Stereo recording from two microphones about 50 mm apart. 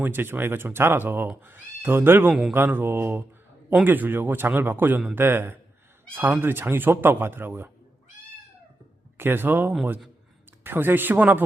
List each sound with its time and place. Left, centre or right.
0.0 s speech: right
9.1 s speech: right